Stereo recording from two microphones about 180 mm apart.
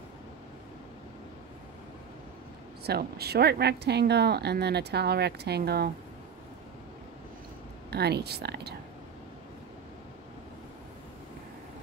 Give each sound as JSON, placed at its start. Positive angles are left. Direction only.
{"t": 2.8, "sound": "a woman's voice", "side_deg": -60}
{"t": 7.9, "sound": "a woman's voice", "side_deg": -65}